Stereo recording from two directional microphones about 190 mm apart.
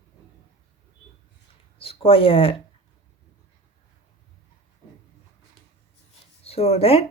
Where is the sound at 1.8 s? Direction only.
30° left (ahead or behind).